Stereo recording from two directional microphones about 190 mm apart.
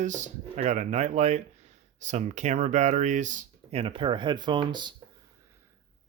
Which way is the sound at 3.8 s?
25° right (ahead or behind).